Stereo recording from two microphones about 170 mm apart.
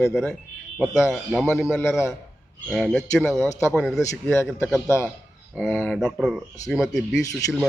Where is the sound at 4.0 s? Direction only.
15° left (ahead or behind).